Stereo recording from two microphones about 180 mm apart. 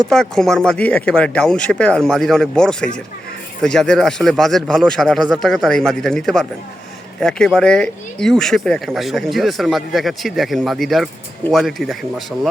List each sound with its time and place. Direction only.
0.1 s speech: 5° left (ahead or behind)